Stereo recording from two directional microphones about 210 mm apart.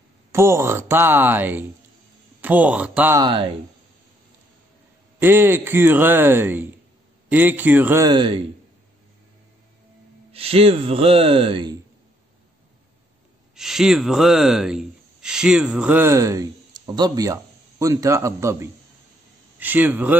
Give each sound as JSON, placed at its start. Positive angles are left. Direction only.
{"t": 0.3, "sound": "a man's voice", "side_deg": -15}
{"t": 5.2, "sound": "a man's voice", "side_deg": -10}
{"t": 8.1, "sound": "speech", "side_deg": -25}
{"t": 10.3, "sound": "speech", "side_deg": -25}
{"t": 13.6, "sound": "a man's voice", "side_deg": 0}